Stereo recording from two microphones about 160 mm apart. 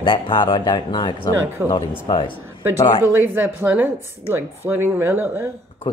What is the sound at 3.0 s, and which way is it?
A woman's voice, 15° right (ahead or behind).